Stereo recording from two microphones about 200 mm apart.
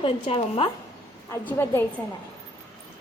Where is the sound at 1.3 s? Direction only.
10° left (ahead or behind).